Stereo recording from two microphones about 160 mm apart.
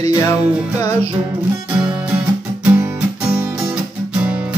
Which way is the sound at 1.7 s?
10° right (ahead or behind).